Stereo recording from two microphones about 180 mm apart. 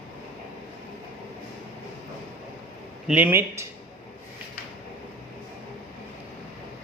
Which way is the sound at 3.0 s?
10° right (ahead or behind).